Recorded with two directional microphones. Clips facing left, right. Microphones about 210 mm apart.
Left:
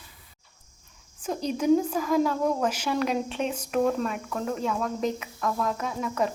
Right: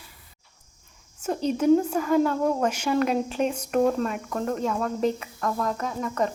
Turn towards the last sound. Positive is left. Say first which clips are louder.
# right 1 dB
turn(degrees=5)  # may be behind; listen again after turning